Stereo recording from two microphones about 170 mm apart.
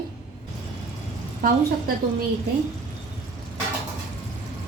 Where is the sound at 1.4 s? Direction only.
60° right (ahead or behind).